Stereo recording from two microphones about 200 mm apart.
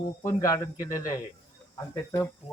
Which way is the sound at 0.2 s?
15° left (ahead or behind).